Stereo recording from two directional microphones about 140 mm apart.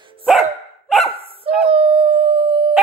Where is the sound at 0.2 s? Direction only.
Centre (ahead or behind).